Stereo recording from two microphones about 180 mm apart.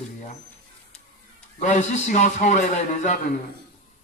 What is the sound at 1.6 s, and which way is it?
A man's voice, 40° left (ahead or behind).